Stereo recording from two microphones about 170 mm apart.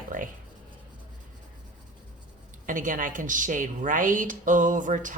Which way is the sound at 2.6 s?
50° right (ahead or behind).